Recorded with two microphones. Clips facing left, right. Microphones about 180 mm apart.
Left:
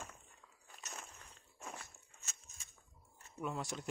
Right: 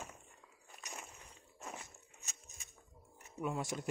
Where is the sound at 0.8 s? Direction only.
10° right (ahead or behind).